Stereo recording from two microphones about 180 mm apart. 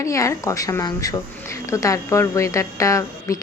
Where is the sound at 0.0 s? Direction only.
15° left (ahead or behind).